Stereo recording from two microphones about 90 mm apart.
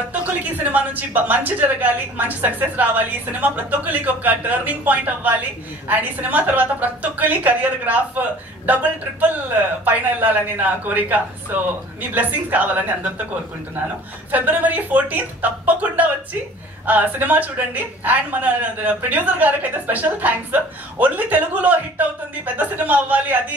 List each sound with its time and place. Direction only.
0.4 s a woman's voice: 20° right (ahead or behind)
9.8 s a woman's voice: 20° right (ahead or behind)
14.3 s a woman's voice: 20° right (ahead or behind)